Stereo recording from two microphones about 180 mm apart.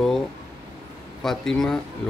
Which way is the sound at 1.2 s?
Centre (ahead or behind).